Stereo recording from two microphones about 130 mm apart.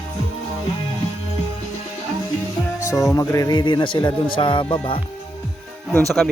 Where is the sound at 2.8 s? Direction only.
25° left (ahead or behind); by 5.0 s 40° left (ahead or behind).